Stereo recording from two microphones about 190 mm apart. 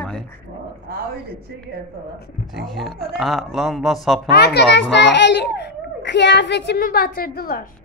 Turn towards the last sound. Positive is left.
turn(degrees=50)  # may be behind; listen again after turning